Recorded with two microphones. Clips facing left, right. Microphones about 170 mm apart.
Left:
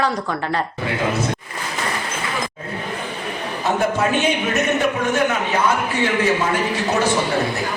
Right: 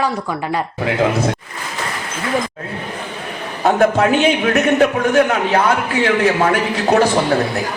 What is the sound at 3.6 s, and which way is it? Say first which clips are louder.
A man's voice: right 6 dB; 65° right (ahead or behind).